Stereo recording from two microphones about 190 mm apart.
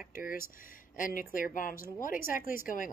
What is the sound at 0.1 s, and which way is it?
A woman's voice, 50° left (ahead or behind).